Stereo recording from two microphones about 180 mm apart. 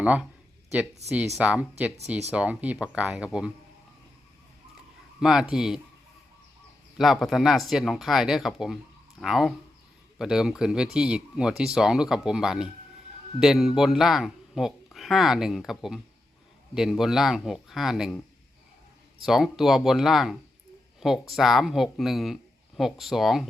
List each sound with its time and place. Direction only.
0.0 s speech: 5° right (ahead or behind)
1.0 s speech: 35° right (ahead or behind)
1.4 s speech: 5° right (ahead or behind)
5.2 s speech: 5° right (ahead or behind)
6.9 s speech: centre (ahead or behind)
19.2 s speech: centre (ahead or behind)